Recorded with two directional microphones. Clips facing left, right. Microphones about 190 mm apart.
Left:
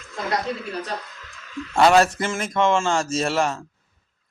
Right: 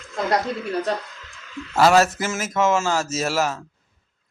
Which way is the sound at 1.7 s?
5° right (ahead or behind).